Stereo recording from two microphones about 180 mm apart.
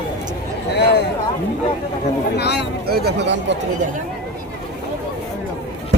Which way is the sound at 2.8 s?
60° right (ahead or behind).